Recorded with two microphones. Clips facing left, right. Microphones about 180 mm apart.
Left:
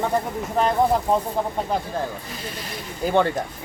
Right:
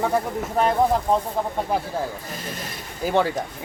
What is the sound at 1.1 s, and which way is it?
Speech, centre (ahead or behind).